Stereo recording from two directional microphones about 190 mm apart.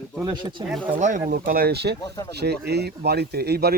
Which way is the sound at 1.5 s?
55° right (ahead or behind).